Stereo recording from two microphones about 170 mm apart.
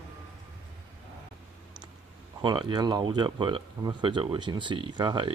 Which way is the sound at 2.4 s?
25° right (ahead or behind).